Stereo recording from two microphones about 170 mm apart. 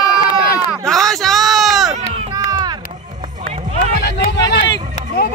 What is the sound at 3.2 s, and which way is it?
Run, 40° right (ahead or behind).